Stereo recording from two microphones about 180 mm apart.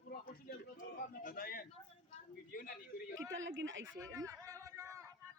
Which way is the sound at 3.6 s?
90° right.